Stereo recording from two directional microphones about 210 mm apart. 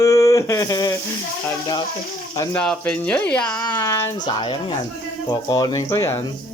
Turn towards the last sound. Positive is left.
turn(degrees=15)  # may be behind; listen again after turning